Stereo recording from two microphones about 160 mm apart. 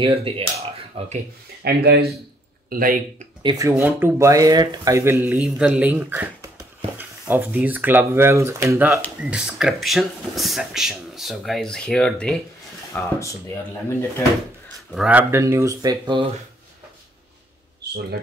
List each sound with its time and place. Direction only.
0.0 s speech: 35° right (ahead or behind)
1.6 s speech: 85° right
2.7 s speech: 60° right (ahead or behind)
3.4 s speech: 20° right (ahead or behind); by 12.4 s 5° left (ahead or behind)
12.9 s speech: 20° left (ahead or behind)
14.9 s speech: 5° right (ahead or behind); by 16.3 s 25° right (ahead or behind)